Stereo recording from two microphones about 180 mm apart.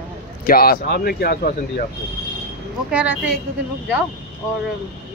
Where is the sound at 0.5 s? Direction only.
55° left (ahead or behind).